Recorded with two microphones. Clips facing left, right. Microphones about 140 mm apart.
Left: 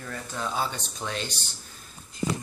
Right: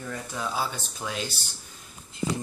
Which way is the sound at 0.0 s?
15° right (ahead or behind).